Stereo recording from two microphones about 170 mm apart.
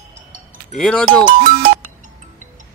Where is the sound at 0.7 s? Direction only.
5° left (ahead or behind).